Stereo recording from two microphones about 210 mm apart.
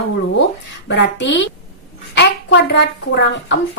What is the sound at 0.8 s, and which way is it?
Speech, 55° left (ahead or behind).